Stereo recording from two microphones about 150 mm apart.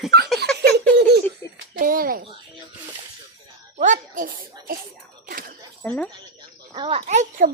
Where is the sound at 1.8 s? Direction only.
70° right (ahead or behind).